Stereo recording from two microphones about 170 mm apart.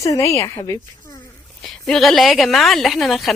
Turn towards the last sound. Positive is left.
turn(degrees=0)  # may be behind; listen again after turning